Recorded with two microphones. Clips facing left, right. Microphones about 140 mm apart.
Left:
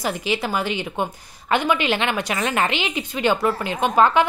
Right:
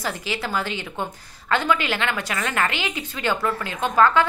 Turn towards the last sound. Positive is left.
turn(degrees=20)  # may be behind; listen again after turning